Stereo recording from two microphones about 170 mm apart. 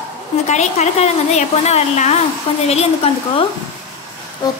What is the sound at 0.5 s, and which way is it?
Speech, 40° left (ahead or behind).